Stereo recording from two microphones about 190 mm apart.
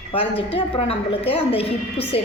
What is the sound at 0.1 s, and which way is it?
A woman's voice, 30° left (ahead or behind).